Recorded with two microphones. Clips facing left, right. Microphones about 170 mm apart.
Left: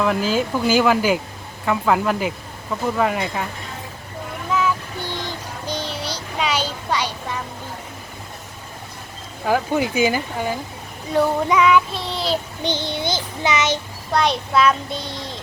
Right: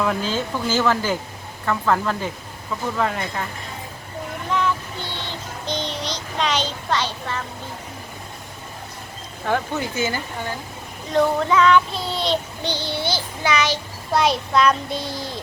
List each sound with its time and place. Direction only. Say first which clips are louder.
0.0 s child singing: left 3 dB; 5° left (ahead or behind)
4.5 s child singing: left 2 dB; 10° left (ahead or behind)
9.4 s child singing: left 4 dB; 10° left (ahead or behind)
12.6 s child singing: left 2 dB; 20° left (ahead or behind)
14.1 s a child's voice: even; centre (ahead or behind)